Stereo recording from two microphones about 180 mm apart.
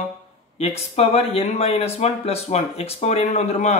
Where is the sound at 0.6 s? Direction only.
35° left (ahead or behind).